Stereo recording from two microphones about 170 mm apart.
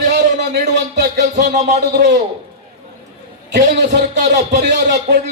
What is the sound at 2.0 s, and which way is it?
Speech, 75° right (ahead or behind).